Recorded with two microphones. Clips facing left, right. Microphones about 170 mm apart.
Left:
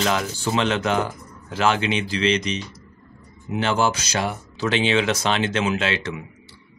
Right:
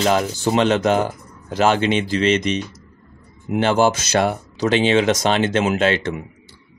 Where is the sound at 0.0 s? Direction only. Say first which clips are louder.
Right 5 dB; 40° right (ahead or behind).